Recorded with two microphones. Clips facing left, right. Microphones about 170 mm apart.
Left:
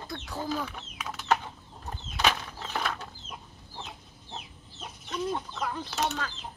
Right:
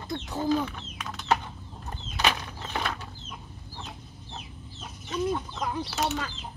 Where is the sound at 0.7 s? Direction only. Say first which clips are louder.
Even; 5° left (ahead or behind).